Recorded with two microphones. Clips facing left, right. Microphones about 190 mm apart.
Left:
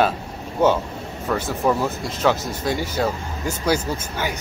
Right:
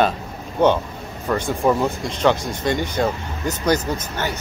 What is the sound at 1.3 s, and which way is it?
Speech, 5° left (ahead or behind).